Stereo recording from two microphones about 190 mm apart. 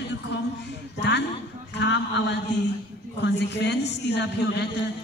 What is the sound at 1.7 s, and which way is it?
A man's voice, 65° left (ahead or behind).